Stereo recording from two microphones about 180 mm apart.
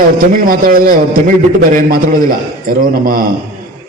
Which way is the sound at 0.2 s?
50° right (ahead or behind).